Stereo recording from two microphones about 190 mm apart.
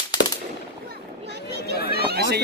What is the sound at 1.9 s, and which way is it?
Chatter, 55° right (ahead or behind).